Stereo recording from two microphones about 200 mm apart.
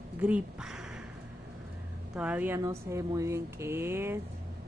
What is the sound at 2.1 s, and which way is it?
Speech, 5° right (ahead or behind).